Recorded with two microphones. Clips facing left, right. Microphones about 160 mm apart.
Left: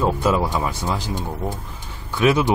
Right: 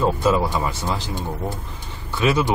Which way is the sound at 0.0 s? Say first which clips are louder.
Right 1 dB; 10° left (ahead or behind).